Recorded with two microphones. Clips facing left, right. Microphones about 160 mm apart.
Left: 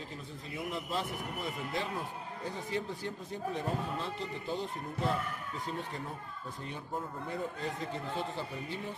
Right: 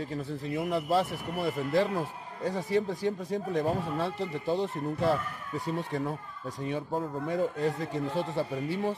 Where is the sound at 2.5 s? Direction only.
90° right; by 4.7 s 70° right (ahead or behind).